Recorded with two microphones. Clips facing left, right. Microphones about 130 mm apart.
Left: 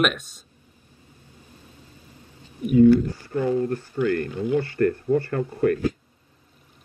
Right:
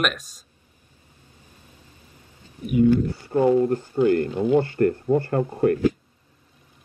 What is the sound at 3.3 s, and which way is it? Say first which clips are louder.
Speech: right 5 dB; 20° right (ahead or behind).